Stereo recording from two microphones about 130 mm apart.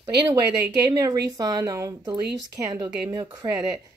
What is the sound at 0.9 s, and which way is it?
Speech, 30° right (ahead or behind).